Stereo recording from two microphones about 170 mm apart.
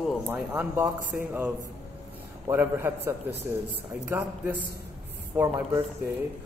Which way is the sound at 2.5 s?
10° right (ahead or behind).